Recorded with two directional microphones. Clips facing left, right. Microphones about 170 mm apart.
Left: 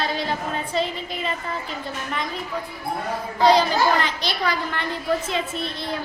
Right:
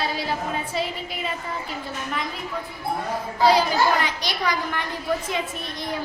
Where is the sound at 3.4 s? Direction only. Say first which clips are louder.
Left 1 dB; 5° right (ahead or behind).